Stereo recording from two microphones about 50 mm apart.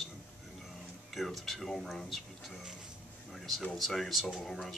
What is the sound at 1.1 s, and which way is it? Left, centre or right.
Speech, centre.